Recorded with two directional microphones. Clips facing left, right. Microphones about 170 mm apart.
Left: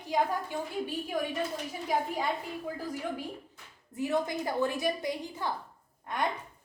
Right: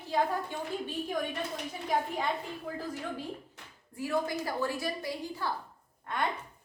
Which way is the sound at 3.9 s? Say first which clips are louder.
Left 1 dB; 20° left (ahead or behind).